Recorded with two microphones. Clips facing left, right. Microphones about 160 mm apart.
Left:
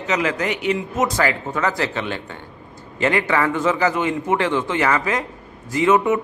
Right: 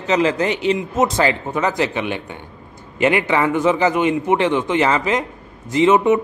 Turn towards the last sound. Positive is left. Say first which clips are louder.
# right 3 dB
turn(degrees=-20)  # may be behind; listen again after turning